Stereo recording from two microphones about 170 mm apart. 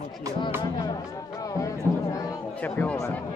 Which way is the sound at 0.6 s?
25° left (ahead or behind).